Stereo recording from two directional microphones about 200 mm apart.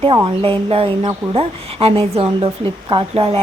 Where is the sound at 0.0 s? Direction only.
25° right (ahead or behind).